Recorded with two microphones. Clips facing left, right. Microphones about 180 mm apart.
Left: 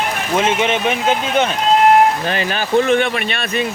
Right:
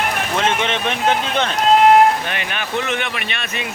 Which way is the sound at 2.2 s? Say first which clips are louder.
Left 6 dB; 35° left (ahead or behind).